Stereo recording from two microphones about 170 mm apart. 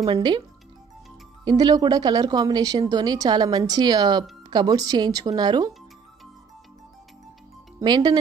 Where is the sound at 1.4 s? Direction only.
25° right (ahead or behind).